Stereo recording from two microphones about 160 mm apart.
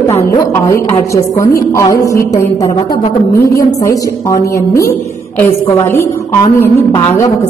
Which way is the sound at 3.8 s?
20° left (ahead or behind).